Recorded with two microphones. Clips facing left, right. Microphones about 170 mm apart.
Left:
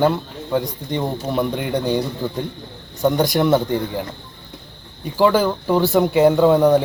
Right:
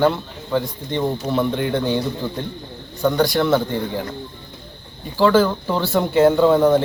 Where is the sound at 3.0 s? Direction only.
20° left (ahead or behind).